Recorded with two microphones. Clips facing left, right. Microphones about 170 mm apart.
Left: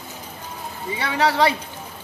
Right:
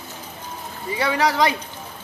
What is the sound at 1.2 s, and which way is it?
Speech, 30° left (ahead or behind).